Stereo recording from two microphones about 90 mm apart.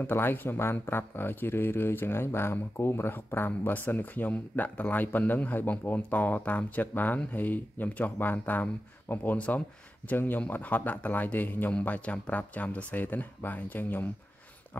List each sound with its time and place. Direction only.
0.0 s speech: 25° left (ahead or behind)